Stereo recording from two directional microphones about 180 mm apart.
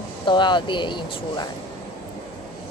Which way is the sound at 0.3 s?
25° left (ahead or behind).